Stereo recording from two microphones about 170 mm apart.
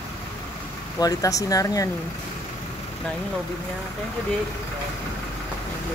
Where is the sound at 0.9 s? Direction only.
20° left (ahead or behind).